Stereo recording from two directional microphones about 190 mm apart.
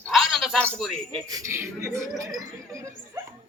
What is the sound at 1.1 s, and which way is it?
Speech, 15° right (ahead or behind).